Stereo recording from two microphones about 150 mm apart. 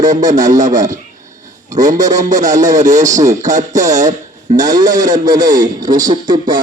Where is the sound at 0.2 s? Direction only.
25° right (ahead or behind).